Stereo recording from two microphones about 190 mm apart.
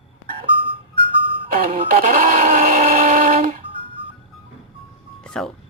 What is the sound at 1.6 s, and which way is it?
Blender, 35° right (ahead or behind).